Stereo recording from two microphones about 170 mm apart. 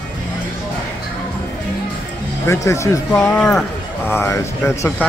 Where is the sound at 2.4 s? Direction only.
15° left (ahead or behind).